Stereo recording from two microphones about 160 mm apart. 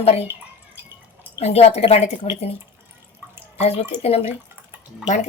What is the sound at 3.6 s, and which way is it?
Speech, 40° left (ahead or behind).